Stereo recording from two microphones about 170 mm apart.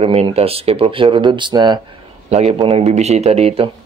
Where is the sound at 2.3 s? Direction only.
40° right (ahead or behind).